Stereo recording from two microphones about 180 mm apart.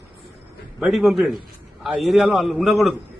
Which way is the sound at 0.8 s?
Centre (ahead or behind).